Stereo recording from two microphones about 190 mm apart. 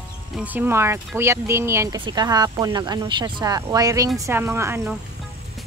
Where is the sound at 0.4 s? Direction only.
10° right (ahead or behind).